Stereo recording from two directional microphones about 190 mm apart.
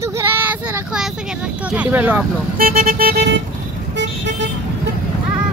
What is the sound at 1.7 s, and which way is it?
Speech, 10° right (ahead or behind).